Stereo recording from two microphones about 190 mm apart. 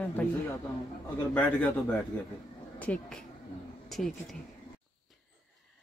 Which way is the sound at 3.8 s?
Centre (ahead or behind).